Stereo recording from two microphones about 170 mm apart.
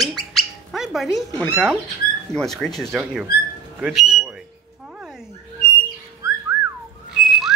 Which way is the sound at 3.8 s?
Centre (ahead or behind).